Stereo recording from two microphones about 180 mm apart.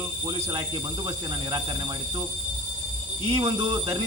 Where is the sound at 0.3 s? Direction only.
25° right (ahead or behind).